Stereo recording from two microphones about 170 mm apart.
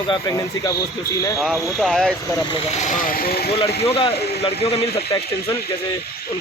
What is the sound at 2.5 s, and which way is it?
Speech, 40° left (ahead or behind).